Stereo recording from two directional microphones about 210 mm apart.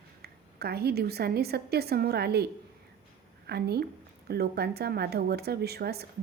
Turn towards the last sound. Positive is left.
turn(degrees=-50)  # may be behind; listen again after turning